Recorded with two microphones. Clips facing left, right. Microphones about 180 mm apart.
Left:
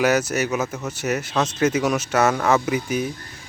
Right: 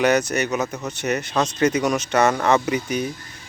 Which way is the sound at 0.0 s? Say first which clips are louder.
Right 1 dB; 5° left (ahead or behind).